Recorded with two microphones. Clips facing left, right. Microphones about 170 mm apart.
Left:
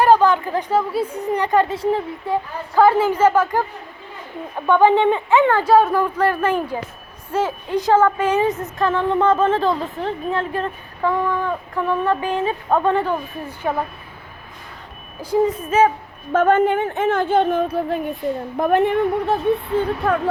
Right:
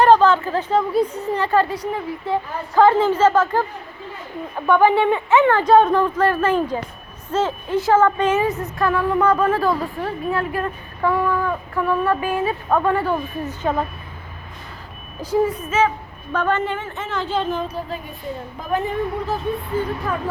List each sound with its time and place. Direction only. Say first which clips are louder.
0.0 s a woman's voice: right 1 dB; 10° left (ahead or behind); by 2.0 s 25° left (ahead or behind)
2.2 s a woman's voice: even; 10° left (ahead or behind)
4.6 s a woman's voice: left 1 dB; 20° left (ahead or behind)
15.2 s a woman's voice: left 1 dB; 10° left (ahead or behind)
16.3 s a woman's voice: left 6 dB; 50° left (ahead or behind); by 20.2 s 65° left (ahead or behind)